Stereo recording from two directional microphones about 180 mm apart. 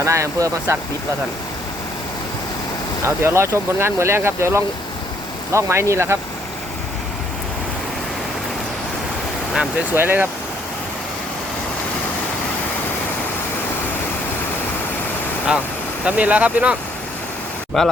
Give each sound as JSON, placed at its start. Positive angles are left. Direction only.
{"t": 0.0, "sound": "speech", "side_deg": -15}
{"t": 3.2, "sound": "speech", "side_deg": -15}
{"t": 9.6, "sound": "speech", "side_deg": -10}
{"t": 16.0, "sound": "speech", "side_deg": -10}
{"t": 17.8, "sound": "speech", "side_deg": 0}